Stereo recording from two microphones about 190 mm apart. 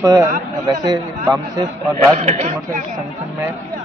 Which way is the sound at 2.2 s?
35° right (ahead or behind).